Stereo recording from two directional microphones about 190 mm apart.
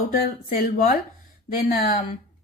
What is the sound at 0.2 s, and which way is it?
A woman's voice, 50° left (ahead or behind).